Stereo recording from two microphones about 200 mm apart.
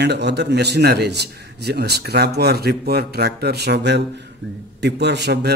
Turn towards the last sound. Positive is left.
turn(degrees=-55)  # may be behind; listen again after turning